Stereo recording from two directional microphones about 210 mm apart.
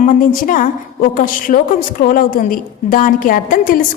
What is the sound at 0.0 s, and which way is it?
A woman's voice, 40° left (ahead or behind).